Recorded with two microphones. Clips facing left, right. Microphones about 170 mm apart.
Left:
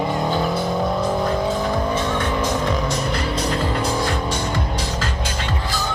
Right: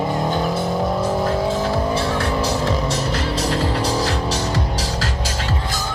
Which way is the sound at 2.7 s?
5° right (ahead or behind).